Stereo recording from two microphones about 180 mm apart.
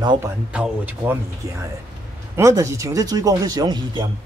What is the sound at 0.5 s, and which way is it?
Speech, 5° right (ahead or behind).